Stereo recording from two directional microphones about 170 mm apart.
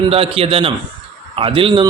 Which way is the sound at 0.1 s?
35° right (ahead or behind).